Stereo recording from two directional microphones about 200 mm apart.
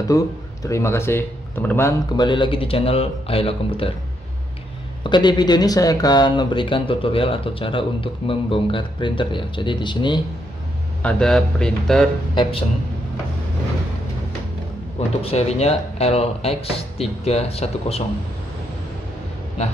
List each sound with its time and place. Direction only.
0.1 s a man's voice: 15° left (ahead or behind)
5.0 s speech: 20° left (ahead or behind)
11.0 s speech: 5° left (ahead or behind)
12.4 s speech: 30° left (ahead or behind)
15.0 s speech: 30° left (ahead or behind)